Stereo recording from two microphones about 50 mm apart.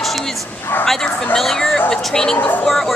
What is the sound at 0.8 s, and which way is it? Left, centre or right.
A woman's voice, centre.